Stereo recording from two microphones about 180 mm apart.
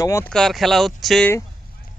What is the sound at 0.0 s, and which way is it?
Speech, 15° left (ahead or behind).